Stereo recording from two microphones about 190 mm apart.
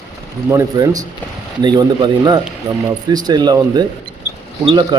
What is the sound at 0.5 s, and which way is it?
Speech, 20° right (ahead or behind).